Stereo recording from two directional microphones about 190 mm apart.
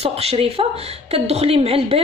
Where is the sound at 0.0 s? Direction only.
30° right (ahead or behind).